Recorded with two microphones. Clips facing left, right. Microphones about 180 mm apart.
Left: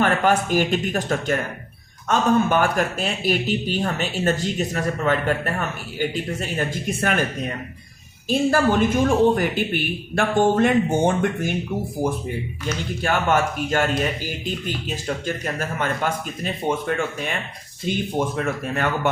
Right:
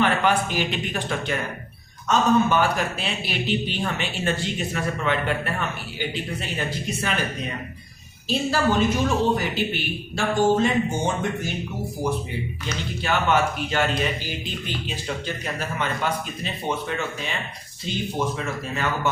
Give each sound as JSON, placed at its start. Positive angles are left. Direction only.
{"t": 0.0, "sound": "a man's voice", "side_deg": 45}